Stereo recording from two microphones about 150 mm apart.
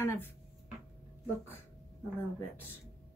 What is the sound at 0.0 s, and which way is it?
Speech, 15° left (ahead or behind).